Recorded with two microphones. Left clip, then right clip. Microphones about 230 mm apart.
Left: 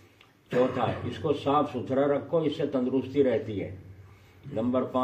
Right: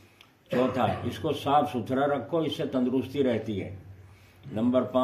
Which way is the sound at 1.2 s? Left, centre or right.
Right.